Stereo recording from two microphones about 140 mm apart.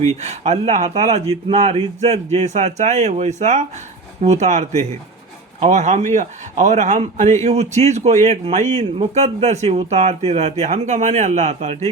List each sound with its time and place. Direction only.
0.2 s speech: 55° right (ahead or behind)